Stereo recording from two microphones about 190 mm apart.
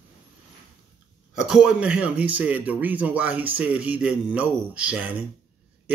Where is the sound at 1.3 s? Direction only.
Centre (ahead or behind).